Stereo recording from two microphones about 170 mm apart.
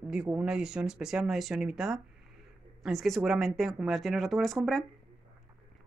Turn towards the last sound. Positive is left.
turn(degrees=0)  # may be behind; listen again after turning